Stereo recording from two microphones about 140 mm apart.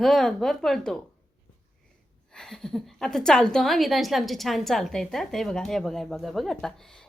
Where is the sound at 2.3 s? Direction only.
5° left (ahead or behind).